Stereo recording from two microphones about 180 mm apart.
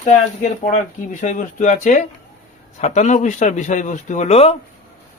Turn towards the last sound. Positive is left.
turn(degrees=35)  # may be behind; listen again after turning